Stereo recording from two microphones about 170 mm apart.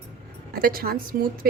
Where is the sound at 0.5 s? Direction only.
60° right (ahead or behind).